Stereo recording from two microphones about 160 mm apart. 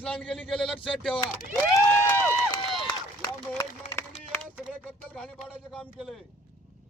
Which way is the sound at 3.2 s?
20° left (ahead or behind).